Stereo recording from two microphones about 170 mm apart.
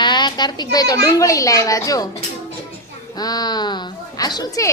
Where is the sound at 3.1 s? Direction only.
25° left (ahead or behind).